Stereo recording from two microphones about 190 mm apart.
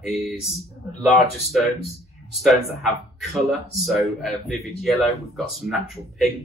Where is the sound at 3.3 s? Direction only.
Centre (ahead or behind).